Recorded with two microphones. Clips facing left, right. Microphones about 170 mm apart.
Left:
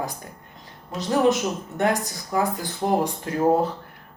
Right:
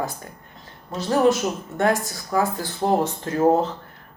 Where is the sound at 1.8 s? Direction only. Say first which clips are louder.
Right 2 dB; 20° left (ahead or behind).